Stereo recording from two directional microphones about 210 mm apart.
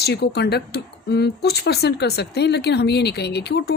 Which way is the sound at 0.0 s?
50° left (ahead or behind).